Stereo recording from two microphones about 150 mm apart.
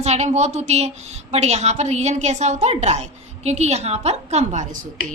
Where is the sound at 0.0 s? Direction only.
50° right (ahead or behind).